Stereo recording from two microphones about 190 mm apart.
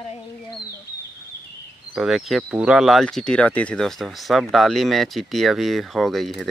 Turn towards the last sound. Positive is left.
turn(degrees=0)  # may be behind; listen again after turning